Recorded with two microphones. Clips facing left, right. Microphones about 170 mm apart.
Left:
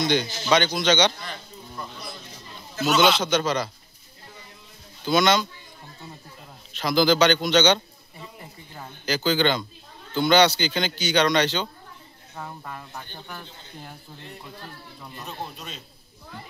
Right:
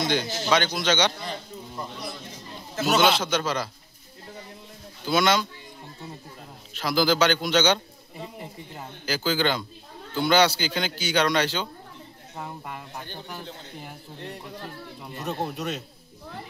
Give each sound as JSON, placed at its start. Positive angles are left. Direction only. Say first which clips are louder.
{"t": 0.0, "sound": "a man's voice", "louder": "left 2 dB", "side_deg": -5}
{"t": 3.0, "sound": "a man's voice", "louder": "left 3 dB", "side_deg": -5}
{"t": 5.0, "sound": "speech", "louder": "left 2 dB", "side_deg": -5}
{"t": 6.8, "sound": "a man's voice", "louder": "left 3 dB", "side_deg": -5}
{"t": 9.0, "sound": "speech", "louder": "left 3 dB", "side_deg": -5}
{"t": 15.2, "sound": "speech", "louder": "right 7 dB", "side_deg": -50}
{"t": 15.5, "sound": "speech", "louder": "right 9 dB", "side_deg": -70}